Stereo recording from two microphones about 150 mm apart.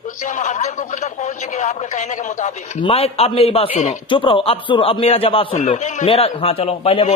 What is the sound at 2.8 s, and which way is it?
A man's voice, 40° left (ahead or behind).